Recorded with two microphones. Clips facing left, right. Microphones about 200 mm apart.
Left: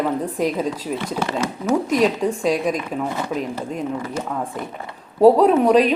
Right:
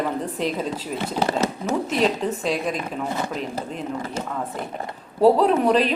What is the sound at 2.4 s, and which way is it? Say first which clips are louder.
Speech: left 6 dB; 40° left (ahead or behind).